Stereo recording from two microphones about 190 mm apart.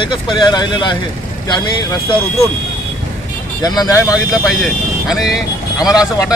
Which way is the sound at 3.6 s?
20° left (ahead or behind).